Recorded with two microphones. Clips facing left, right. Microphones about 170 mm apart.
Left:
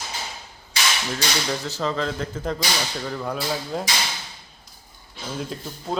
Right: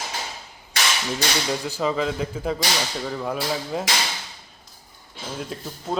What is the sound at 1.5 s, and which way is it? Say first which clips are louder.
Speech: right 2 dB; 10° right (ahead or behind).